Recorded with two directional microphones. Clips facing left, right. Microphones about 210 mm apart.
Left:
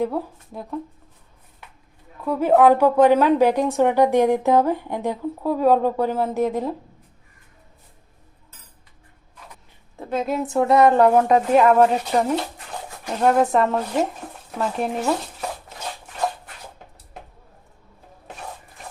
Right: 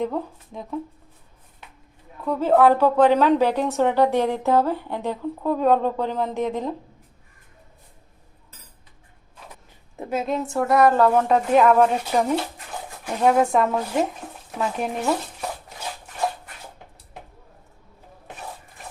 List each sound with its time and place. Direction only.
0.0 s speech: 5° left (ahead or behind)
2.2 s a woman's voice: 10° left (ahead or behind)
10.0 s a sound: 10° right (ahead or behind)
10.4 s speech: 20° left (ahead or behind)
11.3 s speech: centre (ahead or behind)